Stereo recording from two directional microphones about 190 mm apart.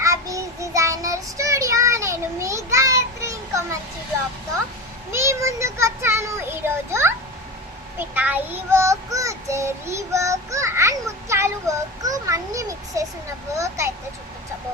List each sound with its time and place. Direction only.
0.0 s child singing: 15° right (ahead or behind)
5.1 s speech: 15° right (ahead or behind)
7.9 s child singing: 10° right (ahead or behind)